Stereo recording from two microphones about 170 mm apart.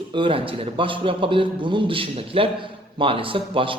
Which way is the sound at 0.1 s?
30° right (ahead or behind).